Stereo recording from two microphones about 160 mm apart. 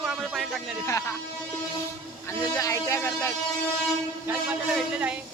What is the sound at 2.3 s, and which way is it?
Music, 20° left (ahead or behind).